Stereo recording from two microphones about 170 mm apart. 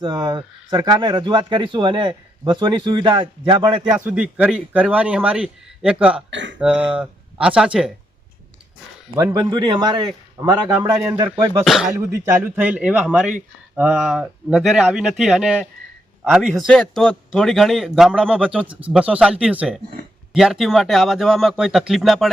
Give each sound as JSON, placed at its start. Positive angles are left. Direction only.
{"t": 0.0, "sound": "speech", "side_deg": -25}
{"t": 3.9, "sound": "speech", "side_deg": -5}
{"t": 6.3, "sound": "speech", "side_deg": -90}
{"t": 6.6, "sound": "speech", "side_deg": -5}
{"t": 9.1, "sound": "speech", "side_deg": -25}
{"t": 11.6, "sound": "speech", "side_deg": 0}